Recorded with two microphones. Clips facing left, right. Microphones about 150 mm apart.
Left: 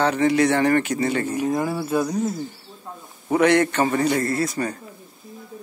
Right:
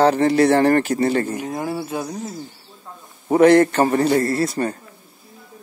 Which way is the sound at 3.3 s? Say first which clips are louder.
Right 5 dB; 35° right (ahead or behind).